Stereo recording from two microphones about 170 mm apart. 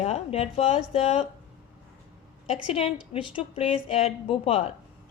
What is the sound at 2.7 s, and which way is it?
A woman's voice, 35° left (ahead or behind).